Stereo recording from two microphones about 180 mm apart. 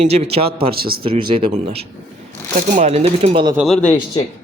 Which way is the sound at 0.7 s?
55° right (ahead or behind).